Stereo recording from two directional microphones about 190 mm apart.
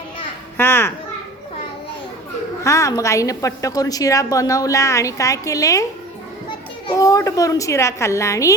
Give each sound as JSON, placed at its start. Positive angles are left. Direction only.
{"t": 0.5, "sound": "children playing", "side_deg": 10}
{"t": 2.6, "sound": "a woman's voice", "side_deg": 15}
{"t": 6.8, "sound": "a woman's voice", "side_deg": 20}